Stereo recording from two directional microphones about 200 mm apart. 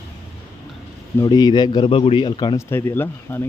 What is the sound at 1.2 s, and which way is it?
Speech, 20° left (ahead or behind).